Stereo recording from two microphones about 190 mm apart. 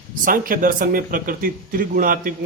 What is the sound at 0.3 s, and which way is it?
A man's voice, 45° right (ahead or behind).